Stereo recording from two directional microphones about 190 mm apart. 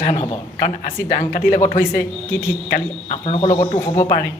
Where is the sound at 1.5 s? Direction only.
40° left (ahead or behind).